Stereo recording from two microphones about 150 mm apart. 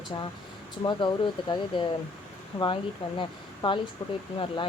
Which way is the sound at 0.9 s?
30° left (ahead or behind).